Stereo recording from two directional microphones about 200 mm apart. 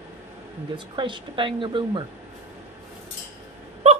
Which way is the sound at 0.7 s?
25° right (ahead or behind).